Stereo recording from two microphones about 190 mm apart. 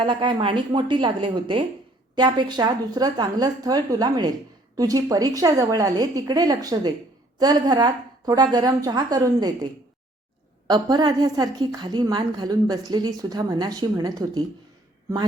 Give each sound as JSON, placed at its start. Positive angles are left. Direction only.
{"t": 0.0, "sound": "a woman's voice", "side_deg": -25}
{"t": 10.7, "sound": "a woman's voice", "side_deg": -20}